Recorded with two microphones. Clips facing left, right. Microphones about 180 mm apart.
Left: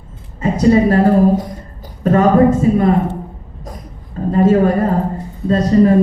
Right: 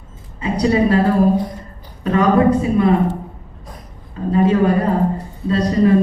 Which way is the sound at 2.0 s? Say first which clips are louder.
Left 3 dB; 45° left (ahead or behind).